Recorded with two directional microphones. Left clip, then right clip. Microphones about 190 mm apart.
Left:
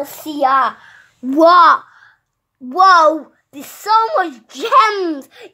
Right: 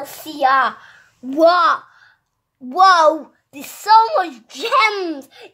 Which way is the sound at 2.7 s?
15° left (ahead or behind).